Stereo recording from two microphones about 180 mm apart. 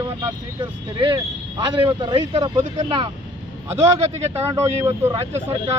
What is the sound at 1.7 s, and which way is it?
Speech, 30° right (ahead or behind).